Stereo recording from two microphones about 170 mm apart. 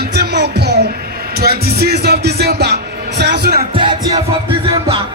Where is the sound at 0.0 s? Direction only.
70° right (ahead or behind).